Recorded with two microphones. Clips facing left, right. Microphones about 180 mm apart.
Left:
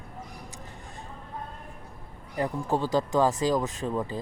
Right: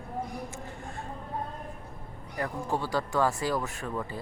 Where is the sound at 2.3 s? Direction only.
20° left (ahead or behind).